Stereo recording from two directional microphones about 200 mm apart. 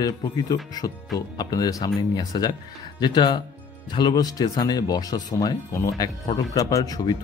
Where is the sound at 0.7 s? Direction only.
20° left (ahead or behind).